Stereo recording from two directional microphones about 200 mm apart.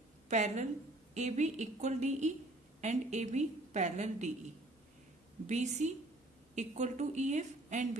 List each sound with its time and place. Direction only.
0.3 s a woman's voice: 35° right (ahead or behind)
5.5 s a woman's voice: 35° right (ahead or behind)